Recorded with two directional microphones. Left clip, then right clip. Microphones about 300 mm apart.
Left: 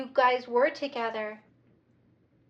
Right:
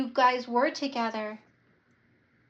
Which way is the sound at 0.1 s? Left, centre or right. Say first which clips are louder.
Left 1 dB; centre.